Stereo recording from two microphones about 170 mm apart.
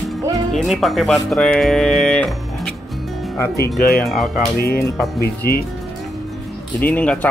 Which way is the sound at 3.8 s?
60° left (ahead or behind).